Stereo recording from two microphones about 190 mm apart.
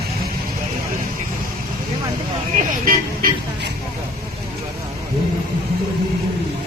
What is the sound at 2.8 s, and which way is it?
Music, 50° right (ahead or behind).